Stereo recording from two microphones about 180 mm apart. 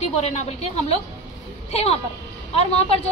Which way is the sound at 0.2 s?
35° left (ahead or behind).